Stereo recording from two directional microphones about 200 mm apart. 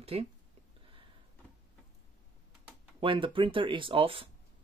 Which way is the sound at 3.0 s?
25° right (ahead or behind).